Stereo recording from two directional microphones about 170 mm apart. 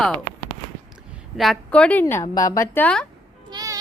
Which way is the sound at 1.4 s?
5° left (ahead or behind).